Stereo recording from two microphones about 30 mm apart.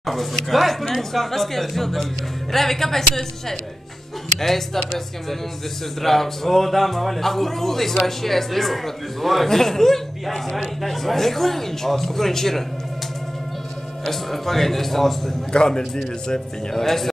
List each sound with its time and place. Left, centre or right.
0.0 s speech: centre
6.0 s a man's voice: centre
14.0 s speech: centre
15.5 s a man's voice: left
16.8 s speech: centre